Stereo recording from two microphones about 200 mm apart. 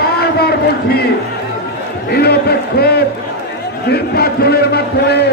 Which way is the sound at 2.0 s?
55° left (ahead or behind).